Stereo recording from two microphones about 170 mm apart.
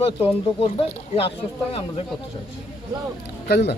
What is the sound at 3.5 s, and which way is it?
Speech, 70° left (ahead or behind).